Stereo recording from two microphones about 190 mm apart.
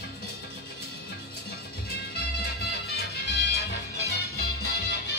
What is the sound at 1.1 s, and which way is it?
Music, 55° left (ahead or behind).